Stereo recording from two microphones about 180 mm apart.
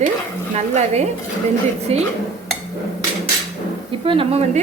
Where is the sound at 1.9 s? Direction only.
35° right (ahead or behind).